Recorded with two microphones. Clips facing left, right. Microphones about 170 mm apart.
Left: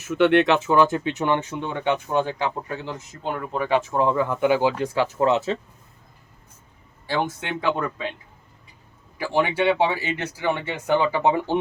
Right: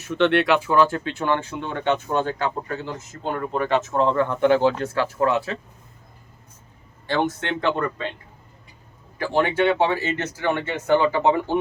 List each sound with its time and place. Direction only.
0.0 s speech: 5° left (ahead or behind)
0.3 s speech: 20° left (ahead or behind)
7.1 s speech: 10° left (ahead or behind)
9.1 s speech: 10° left (ahead or behind)